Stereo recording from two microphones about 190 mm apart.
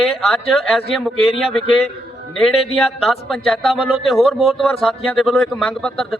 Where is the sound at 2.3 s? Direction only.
Centre (ahead or behind).